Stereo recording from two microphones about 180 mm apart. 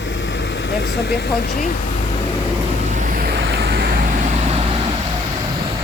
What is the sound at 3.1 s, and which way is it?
Vehicle, 55° right (ahead or behind).